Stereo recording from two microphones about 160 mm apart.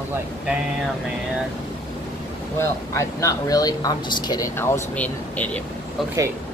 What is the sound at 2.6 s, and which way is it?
Speech, 15° left (ahead or behind).